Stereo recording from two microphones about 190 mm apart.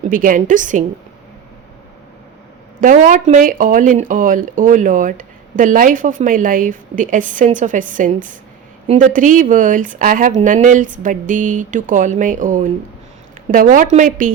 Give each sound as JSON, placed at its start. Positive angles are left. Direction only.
{"t": 0.0, "sound": "speech", "side_deg": -45}
{"t": 2.8, "sound": "speech", "side_deg": -45}